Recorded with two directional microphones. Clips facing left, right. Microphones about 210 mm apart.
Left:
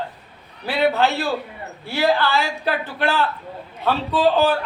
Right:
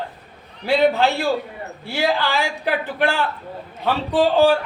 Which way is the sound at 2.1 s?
15° right (ahead or behind).